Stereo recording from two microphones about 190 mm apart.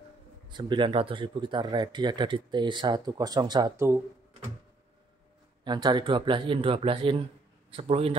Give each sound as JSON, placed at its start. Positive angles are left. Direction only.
{"t": 0.5, "sound": "speech", "side_deg": -25}
{"t": 5.6, "sound": "a man's voice", "side_deg": -25}